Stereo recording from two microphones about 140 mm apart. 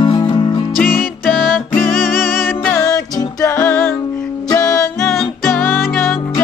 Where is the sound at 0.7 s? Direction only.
Centre (ahead or behind).